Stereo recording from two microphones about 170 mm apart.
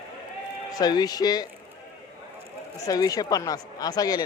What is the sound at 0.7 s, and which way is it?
Speech, 20° left (ahead or behind).